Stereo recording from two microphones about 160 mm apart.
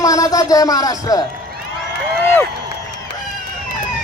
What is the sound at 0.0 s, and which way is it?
Speech, 20° left (ahead or behind).